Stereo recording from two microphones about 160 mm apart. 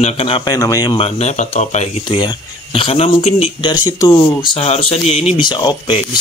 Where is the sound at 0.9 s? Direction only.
40° left (ahead or behind).